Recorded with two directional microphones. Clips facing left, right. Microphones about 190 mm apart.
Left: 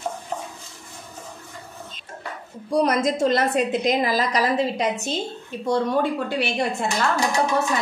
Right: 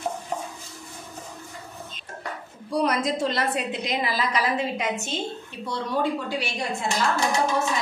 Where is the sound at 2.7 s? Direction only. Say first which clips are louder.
Left 4 dB; 45° left (ahead or behind).